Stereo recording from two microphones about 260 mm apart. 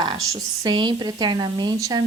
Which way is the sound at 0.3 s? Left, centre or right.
Centre.